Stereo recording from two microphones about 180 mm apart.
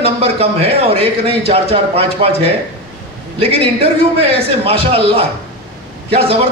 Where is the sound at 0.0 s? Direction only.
35° right (ahead or behind).